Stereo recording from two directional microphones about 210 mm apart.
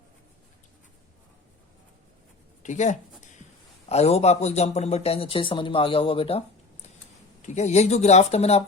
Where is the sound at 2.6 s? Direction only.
35° left (ahead or behind).